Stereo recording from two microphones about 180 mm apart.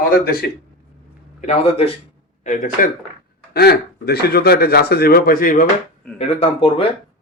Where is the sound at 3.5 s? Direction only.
60° left (ahead or behind).